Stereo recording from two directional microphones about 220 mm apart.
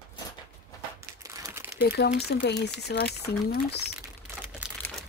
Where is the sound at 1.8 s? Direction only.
45° left (ahead or behind).